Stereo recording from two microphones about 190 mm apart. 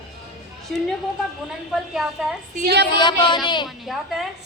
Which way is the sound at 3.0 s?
25° left (ahead or behind).